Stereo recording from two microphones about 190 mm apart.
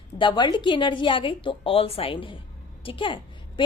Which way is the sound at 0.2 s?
25° left (ahead or behind).